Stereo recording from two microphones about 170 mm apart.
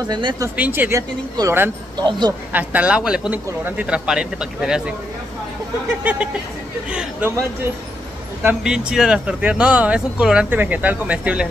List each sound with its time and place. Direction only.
0.1 s speech: 25° right (ahead or behind)
0.6 s speech: 10° right (ahead or behind)
2.5 s speech: 10° right (ahead or behind)
6.9 s speech: 10° right (ahead or behind)
8.4 s speech: 5° right (ahead or behind)